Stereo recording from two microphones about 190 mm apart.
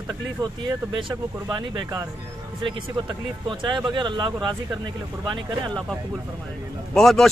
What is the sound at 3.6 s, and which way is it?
Speech, 25° right (ahead or behind).